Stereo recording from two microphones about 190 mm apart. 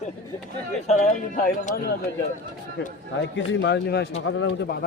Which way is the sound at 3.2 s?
70° left (ahead or behind).